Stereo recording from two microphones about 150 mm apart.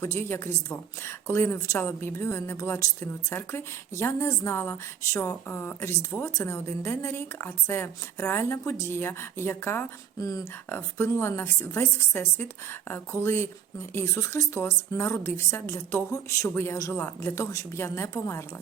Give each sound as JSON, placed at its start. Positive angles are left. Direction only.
{"t": 0.0, "sound": "a woman's voice", "side_deg": 15}